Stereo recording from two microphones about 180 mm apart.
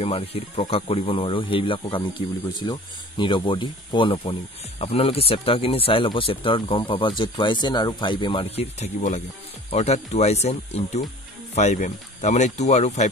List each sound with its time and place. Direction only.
0.0 s speech: 35° left (ahead or behind)